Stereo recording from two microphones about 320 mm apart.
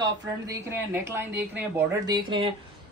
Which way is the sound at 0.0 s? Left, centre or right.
Centre.